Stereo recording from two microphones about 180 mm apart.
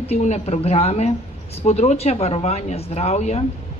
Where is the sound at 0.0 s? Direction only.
35° left (ahead or behind).